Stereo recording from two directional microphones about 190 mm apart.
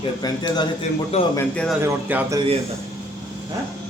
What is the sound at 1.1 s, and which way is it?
Speech, 35° left (ahead or behind).